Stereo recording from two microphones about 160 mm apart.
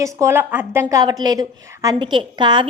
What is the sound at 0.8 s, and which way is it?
A woman's voice, 25° right (ahead or behind).